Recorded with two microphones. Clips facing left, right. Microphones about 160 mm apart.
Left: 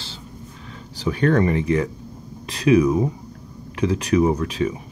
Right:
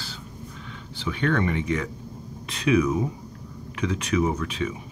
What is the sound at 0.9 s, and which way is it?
Speech, 40° left (ahead or behind).